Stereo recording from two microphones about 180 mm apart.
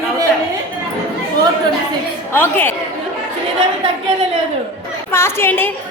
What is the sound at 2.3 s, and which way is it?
Speech, 10° left (ahead or behind).